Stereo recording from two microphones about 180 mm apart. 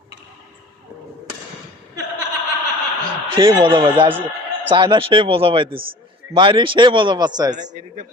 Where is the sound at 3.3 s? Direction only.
25° right (ahead or behind).